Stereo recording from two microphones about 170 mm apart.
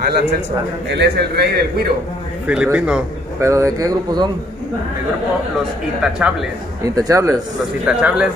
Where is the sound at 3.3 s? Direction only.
15° right (ahead or behind).